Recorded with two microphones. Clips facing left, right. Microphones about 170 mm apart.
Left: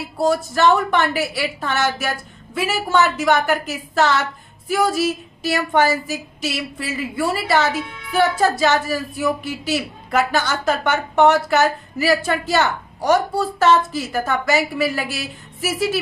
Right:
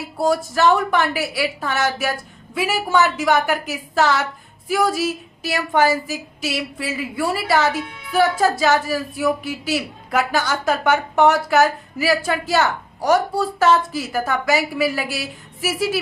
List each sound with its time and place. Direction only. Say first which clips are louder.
0.2 s a woman's voice: left 1 dB; 5° right (ahead or behind)